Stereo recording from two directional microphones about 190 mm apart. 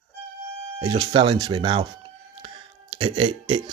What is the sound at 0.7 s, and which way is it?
Speech, 25° right (ahead or behind).